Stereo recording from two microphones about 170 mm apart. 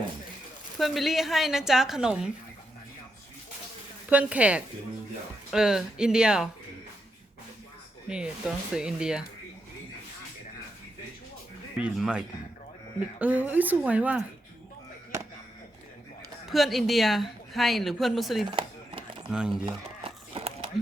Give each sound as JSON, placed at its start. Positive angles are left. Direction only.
{"t": 0.8, "sound": "a woman's voice", "side_deg": 0}
{"t": 4.1, "sound": "a woman's voice", "side_deg": -10}
{"t": 8.0, "sound": "a woman's voice", "side_deg": -5}
{"t": 11.8, "sound": "a woman's voice", "side_deg": -5}
{"t": 16.5, "sound": "a woman's voice", "side_deg": 0}
{"t": 18.4, "sound": "a sound", "side_deg": -30}
{"t": 19.3, "sound": "a woman's voice", "side_deg": -5}
{"t": 19.6, "sound": "crumpling", "side_deg": -35}